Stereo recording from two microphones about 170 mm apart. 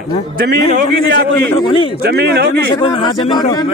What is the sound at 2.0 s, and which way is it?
Speech, 70° right (ahead or behind).